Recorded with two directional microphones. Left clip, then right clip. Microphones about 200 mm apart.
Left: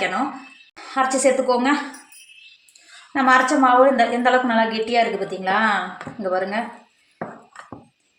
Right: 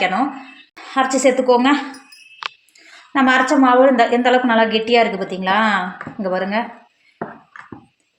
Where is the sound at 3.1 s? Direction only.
45° right (ahead or behind).